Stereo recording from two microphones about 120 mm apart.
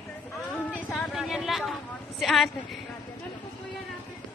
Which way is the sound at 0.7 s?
10° left (ahead or behind).